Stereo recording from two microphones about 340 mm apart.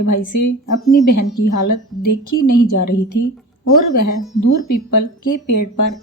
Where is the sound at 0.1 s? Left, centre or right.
Left.